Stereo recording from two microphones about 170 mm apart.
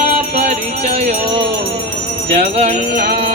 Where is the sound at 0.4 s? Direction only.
40° right (ahead or behind).